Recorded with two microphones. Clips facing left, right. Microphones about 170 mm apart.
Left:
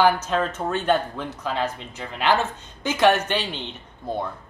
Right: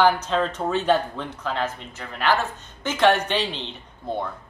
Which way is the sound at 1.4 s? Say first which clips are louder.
Left 1 dB; 15° left (ahead or behind).